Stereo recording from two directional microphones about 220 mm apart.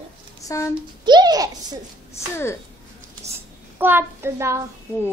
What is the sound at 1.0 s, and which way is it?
Child singing, 20° right (ahead or behind).